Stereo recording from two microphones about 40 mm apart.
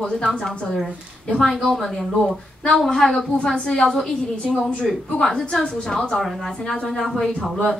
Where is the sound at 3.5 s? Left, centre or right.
Left.